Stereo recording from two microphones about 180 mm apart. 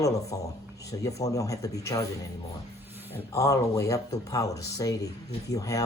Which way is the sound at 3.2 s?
15° left (ahead or behind).